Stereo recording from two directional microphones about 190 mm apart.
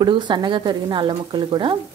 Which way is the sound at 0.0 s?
25° right (ahead or behind).